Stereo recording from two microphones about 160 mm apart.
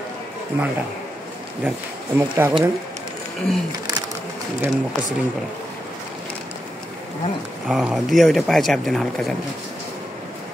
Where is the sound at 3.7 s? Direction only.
25° right (ahead or behind).